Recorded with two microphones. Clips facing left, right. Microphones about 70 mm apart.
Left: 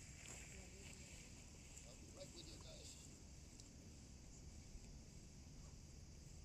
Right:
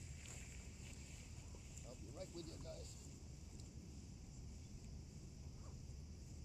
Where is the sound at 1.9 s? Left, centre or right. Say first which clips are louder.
Right 7 dB; right.